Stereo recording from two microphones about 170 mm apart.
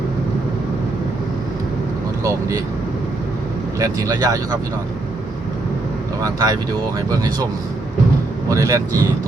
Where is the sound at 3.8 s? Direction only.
20° right (ahead or behind).